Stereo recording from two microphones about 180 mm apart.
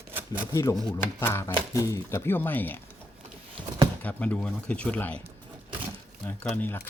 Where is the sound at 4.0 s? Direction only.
10° left (ahead or behind).